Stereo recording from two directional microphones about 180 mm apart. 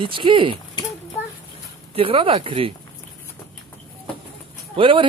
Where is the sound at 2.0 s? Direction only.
30° right (ahead or behind).